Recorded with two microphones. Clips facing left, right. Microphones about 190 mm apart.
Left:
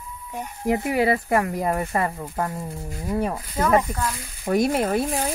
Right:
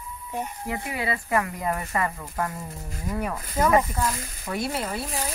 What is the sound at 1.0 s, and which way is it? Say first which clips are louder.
Speech: left 2 dB; 40° left (ahead or behind).